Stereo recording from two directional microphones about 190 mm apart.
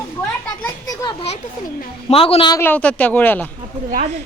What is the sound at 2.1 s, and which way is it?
Speech, 30° left (ahead or behind).